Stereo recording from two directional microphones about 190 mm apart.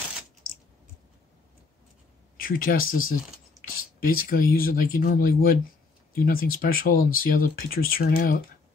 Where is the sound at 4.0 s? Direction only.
50° left (ahead or behind).